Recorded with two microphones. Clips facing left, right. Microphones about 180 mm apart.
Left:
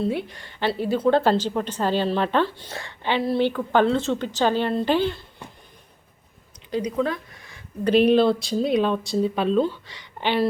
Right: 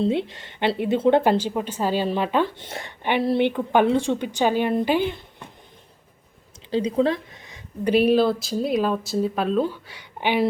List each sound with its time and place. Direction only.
0.0 s speech: 25° right (ahead or behind)
2.6 s speech: 20° right (ahead or behind)
6.7 s speech: 30° right (ahead or behind); by 10.4 s 10° right (ahead or behind)